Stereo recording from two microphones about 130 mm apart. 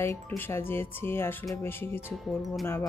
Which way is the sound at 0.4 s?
15° left (ahead or behind).